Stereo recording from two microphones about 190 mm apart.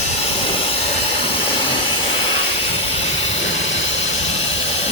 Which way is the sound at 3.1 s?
80° left.